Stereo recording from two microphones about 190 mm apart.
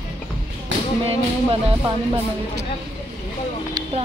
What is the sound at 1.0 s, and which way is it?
Music, 30° right (ahead or behind).